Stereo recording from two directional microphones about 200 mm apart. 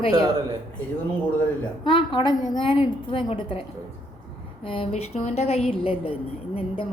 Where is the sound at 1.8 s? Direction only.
25° left (ahead or behind).